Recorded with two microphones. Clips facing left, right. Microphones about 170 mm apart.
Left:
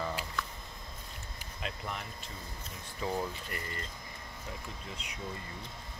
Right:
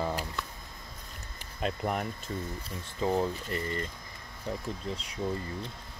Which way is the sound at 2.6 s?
25° right (ahead or behind).